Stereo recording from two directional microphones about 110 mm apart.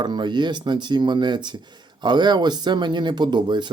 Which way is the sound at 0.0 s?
45° right (ahead or behind).